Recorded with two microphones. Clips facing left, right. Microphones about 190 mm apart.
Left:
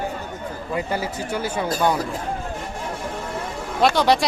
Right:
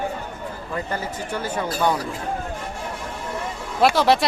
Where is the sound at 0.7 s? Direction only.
10° left (ahead or behind).